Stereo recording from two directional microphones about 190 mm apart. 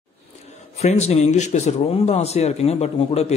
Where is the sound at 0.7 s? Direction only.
35° left (ahead or behind).